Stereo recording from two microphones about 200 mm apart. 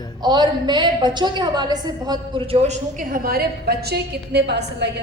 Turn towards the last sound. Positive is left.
turn(degrees=-55)  # may be behind; listen again after turning